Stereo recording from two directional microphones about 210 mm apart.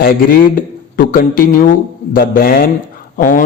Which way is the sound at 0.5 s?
40° left (ahead or behind).